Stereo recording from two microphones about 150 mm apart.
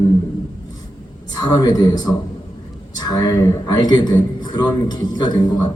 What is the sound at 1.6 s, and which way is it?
A man's voice, 25° left (ahead or behind).